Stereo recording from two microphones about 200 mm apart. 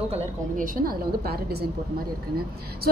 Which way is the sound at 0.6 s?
50° right (ahead or behind).